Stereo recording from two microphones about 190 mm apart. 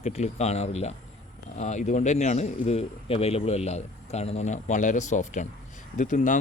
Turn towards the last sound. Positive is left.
turn(degrees=40)  # may be behind; listen again after turning